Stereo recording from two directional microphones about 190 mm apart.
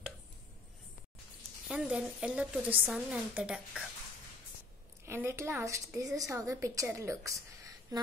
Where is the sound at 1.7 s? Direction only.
5° right (ahead or behind).